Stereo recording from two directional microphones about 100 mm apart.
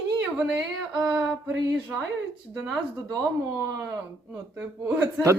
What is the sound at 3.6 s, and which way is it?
Speech, 30° right (ahead or behind).